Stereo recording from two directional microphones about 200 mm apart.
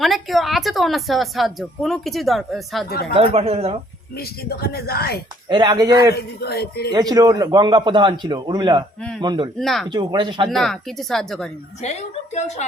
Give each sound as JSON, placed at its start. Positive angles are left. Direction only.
{"t": 0.0, "sound": "a woman's voice", "side_deg": 0}
{"t": 3.1, "sound": "a man's voice", "side_deg": -30}
{"t": 4.2, "sound": "speech", "side_deg": 50}
{"t": 5.5, "sound": "a man's voice", "side_deg": -20}
{"t": 6.1, "sound": "speech", "side_deg": 50}
{"t": 6.9, "sound": "a man's voice", "side_deg": -20}
{"t": 9.0, "sound": "a man's voice", "side_deg": 5}
{"t": 9.2, "sound": "a man's voice", "side_deg": -20}
{"t": 9.6, "sound": "a woman's voice", "side_deg": 0}
{"t": 9.9, "sound": "a man's voice", "side_deg": -20}
{"t": 10.5, "sound": "a woman's voice", "side_deg": 0}
{"t": 11.8, "sound": "a woman's voice", "side_deg": 35}